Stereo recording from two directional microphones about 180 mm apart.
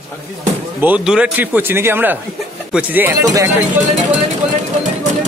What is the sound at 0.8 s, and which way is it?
A man's voice, 5° right (ahead or behind).